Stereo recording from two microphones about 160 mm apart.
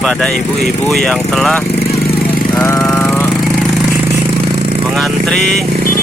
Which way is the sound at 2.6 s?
15° left (ahead or behind).